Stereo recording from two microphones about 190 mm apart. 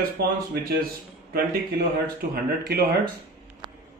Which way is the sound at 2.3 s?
55° right (ahead or behind).